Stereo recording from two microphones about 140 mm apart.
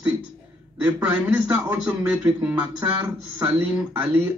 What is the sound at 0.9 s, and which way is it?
A man's voice, 10° right (ahead or behind).